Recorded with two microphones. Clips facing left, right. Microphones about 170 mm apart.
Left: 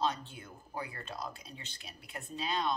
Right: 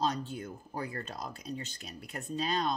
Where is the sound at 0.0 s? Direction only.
40° right (ahead or behind).